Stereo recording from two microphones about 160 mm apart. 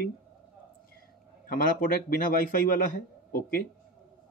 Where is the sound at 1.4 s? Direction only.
60° left (ahead or behind).